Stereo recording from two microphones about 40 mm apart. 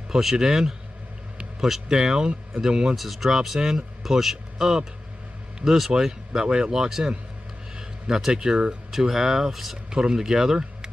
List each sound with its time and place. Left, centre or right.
0.1 s speech: centre
1.9 s speech: right
3.0 s speech: centre
7.7 s a sound: centre
8.3 s speech: right
8.9 s speech: centre
9.8 s speech: centre